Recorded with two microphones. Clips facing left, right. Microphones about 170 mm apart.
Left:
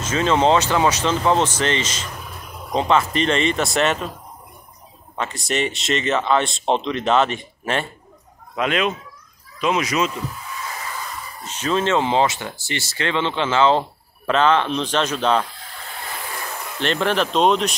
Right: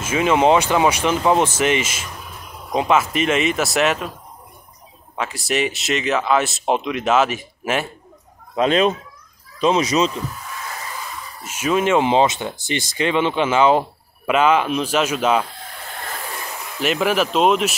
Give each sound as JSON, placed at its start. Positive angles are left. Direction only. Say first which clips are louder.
{"t": 0.0, "sound": "speech", "louder": "right 2 dB", "side_deg": -10}
{"t": 5.1, "sound": "speech", "louder": "right 1 dB", "side_deg": 0}
{"t": 8.5, "sound": "speech", "louder": "right 5 dB", "side_deg": -30}
{"t": 11.4, "sound": "speech", "louder": "right 2 dB", "side_deg": -10}
{"t": 16.8, "sound": "speech", "louder": "right 2 dB", "side_deg": -5}